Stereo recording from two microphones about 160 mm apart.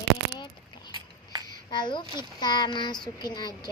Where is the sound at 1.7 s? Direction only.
30° left (ahead or behind).